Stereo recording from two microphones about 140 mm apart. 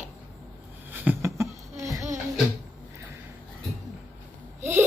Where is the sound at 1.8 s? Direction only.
25° right (ahead or behind).